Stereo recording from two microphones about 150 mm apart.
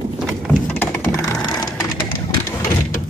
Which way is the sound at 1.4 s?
25° left (ahead or behind).